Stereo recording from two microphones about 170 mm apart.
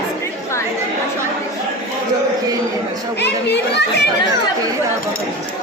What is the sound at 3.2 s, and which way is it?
Chatter, 90° left.